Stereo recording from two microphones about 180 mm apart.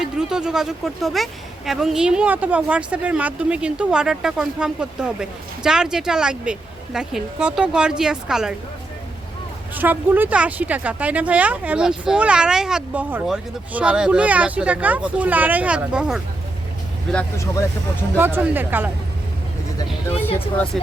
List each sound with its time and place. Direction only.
0.0 s speech: 5° right (ahead or behind)
9.7 s speech: 10° right (ahead or behind)
17.1 s speech: 10° left (ahead or behind)
18.2 s speech: 10° right (ahead or behind)
20.1 s speech: 10° left (ahead or behind)